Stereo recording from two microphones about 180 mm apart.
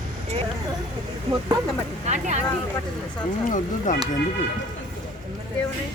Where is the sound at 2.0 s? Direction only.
40° right (ahead or behind).